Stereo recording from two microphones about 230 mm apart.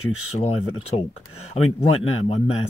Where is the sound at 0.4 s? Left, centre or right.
Left.